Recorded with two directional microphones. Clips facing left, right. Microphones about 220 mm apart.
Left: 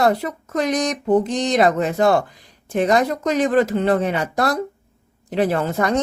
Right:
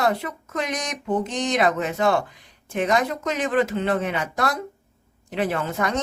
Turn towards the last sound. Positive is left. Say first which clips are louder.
# left 5 dB
turn(degrees=35)  # may be behind; listen again after turning